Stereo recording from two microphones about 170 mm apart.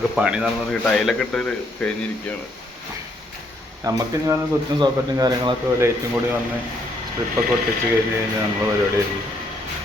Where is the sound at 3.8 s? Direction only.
20° right (ahead or behind).